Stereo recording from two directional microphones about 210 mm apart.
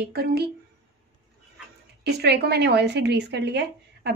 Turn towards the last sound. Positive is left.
turn(degrees=-55)  # may be behind; listen again after turning